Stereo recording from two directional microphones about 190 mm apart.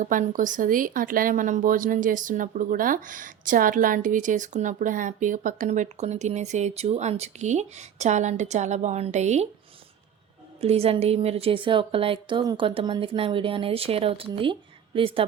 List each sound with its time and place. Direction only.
0.0 s speech: 45° right (ahead or behind)
10.6 s a woman's voice: 30° right (ahead or behind)